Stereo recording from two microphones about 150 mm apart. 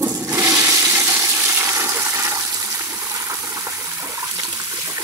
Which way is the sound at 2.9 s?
20° right (ahead or behind).